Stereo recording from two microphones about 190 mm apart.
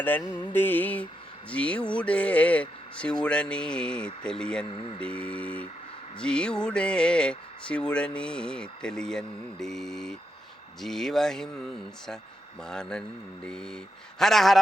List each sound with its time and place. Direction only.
0.0 s mantra: 10° left (ahead or behind)
2.0 s speech: 5° left (ahead or behind)
4.6 s speech: 30° left (ahead or behind)
5.2 s mantra: 5° left (ahead or behind)
6.2 s speech: 5° left (ahead or behind)